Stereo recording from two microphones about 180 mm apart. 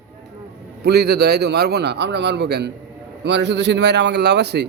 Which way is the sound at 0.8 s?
65° right (ahead or behind).